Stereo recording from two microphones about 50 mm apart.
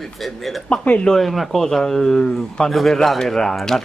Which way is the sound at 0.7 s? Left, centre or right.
Left.